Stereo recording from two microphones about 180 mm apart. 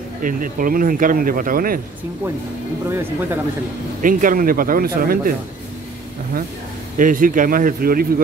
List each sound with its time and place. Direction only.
0.2 s speech: 50° right (ahead or behind)
2.9 s speech: 15° right (ahead or behind)
4.0 s speech: 50° right (ahead or behind)
7.0 s speech: 50° right (ahead or behind)